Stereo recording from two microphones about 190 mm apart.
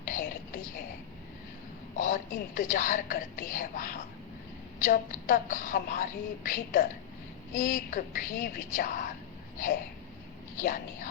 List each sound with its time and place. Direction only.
0.0 s a sound: 45° left (ahead or behind)
2.0 s speech: 45° left (ahead or behind)
10.6 s speech: 45° left (ahead or behind)